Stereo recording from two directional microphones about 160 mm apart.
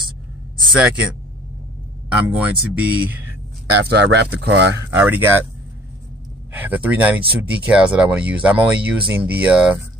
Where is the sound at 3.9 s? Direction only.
90° right.